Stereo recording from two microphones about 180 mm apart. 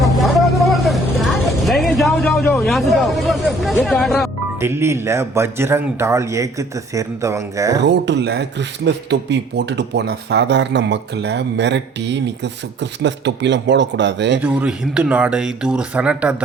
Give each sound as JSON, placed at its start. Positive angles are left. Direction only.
{"t": 0.0, "sound": "vehicle", "side_deg": 0}
{"t": 3.8, "sound": "speech", "side_deg": 0}
{"t": 4.6, "sound": "speech", "side_deg": -15}
{"t": 7.9, "sound": "speech", "side_deg": -75}
{"t": 14.4, "sound": "speech", "side_deg": -5}